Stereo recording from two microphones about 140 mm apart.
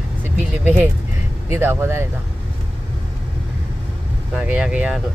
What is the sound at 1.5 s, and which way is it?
Speech, 15° right (ahead or behind).